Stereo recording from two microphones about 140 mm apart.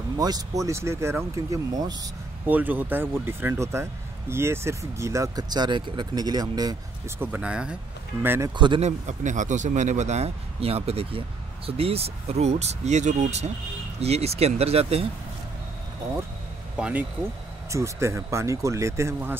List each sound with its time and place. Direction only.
0.2 s speech: 25° right (ahead or behind)
2.4 s speech: 10° right (ahead or behind); by 6.8 s 30° right (ahead or behind)
7.2 s speech: 10° right (ahead or behind)
8.5 s a man's voice: 35° right (ahead or behind)
8.8 s speech: 60° right (ahead or behind)
16.7 s speech: 10° right (ahead or behind)
17.6 s speech: 20° right (ahead or behind)